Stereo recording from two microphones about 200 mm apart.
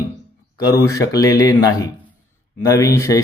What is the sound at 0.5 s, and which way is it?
A man's voice, 15° left (ahead or behind).